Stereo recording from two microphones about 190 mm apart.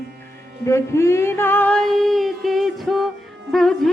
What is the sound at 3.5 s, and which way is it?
Music, centre (ahead or behind).